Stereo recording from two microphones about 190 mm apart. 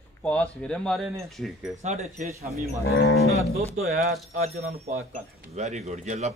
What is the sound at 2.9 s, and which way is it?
Livestock, 60° left (ahead or behind).